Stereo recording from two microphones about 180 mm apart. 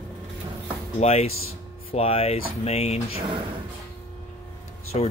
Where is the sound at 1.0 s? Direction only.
35° left (ahead or behind).